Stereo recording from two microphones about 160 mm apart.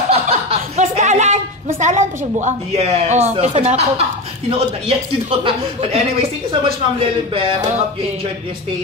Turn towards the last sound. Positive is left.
turn(degrees=-35)  # may be behind; listen again after turning